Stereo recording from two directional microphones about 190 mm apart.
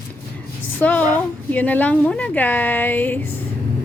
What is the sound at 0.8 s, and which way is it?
A woman's voice, 10° left (ahead or behind).